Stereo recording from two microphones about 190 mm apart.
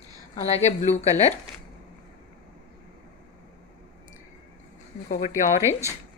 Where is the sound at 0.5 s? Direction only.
35° left (ahead or behind).